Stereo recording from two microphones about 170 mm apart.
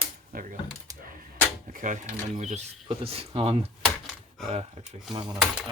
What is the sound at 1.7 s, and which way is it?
Speech, 50° right (ahead or behind).